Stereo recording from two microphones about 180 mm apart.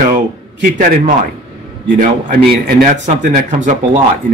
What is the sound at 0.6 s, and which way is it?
Speech, 50° right (ahead or behind).